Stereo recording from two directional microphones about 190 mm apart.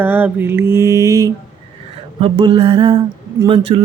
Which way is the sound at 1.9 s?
30° right (ahead or behind).